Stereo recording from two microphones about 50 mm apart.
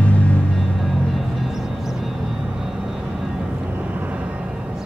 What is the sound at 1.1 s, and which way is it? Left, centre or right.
Music, centre.